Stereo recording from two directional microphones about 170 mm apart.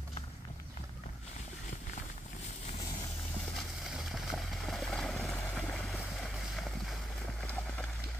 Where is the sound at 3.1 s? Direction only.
Centre (ahead or behind).